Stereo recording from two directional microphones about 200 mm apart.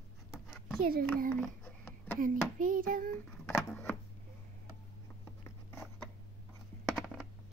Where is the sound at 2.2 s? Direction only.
45° right (ahead or behind).